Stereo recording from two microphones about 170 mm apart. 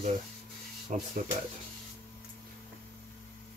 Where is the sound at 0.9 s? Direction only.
50° right (ahead or behind).